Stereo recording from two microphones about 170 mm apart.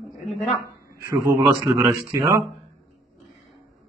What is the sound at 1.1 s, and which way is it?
Speech, 15° right (ahead or behind).